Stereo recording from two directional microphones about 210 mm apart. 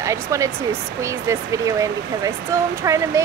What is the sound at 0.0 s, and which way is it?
Speech, 15° right (ahead or behind).